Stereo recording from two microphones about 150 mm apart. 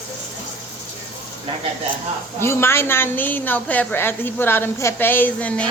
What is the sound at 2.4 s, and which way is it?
A woman's voice, 15° left (ahead or behind).